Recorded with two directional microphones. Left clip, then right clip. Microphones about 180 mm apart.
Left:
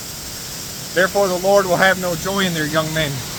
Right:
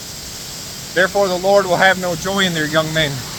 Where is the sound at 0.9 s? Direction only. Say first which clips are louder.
Right 1 dB; 15° right (ahead or behind).